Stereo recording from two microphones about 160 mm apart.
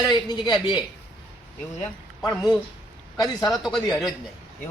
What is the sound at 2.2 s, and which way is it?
Speech, 20° left (ahead or behind).